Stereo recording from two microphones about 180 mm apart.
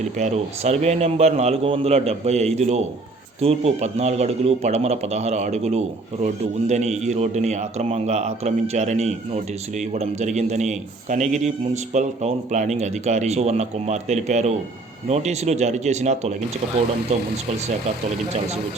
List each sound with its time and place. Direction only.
0.0 s a man's voice: 40° right (ahead or behind)